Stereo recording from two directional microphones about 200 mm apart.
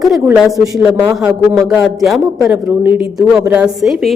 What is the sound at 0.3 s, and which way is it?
Speech, centre (ahead or behind).